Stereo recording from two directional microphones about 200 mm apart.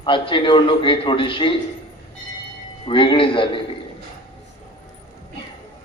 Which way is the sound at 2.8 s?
25° left (ahead or behind).